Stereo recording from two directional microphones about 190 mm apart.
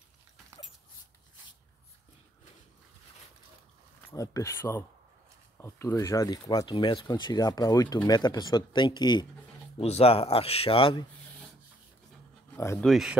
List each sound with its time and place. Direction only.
4.1 s a man's voice: 15° left (ahead or behind)
12.5 s speech: 15° left (ahead or behind)
12.8 s speech: centre (ahead or behind)